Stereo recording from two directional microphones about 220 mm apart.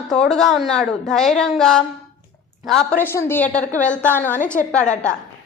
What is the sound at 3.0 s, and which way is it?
A woman's voice, 10° left (ahead or behind).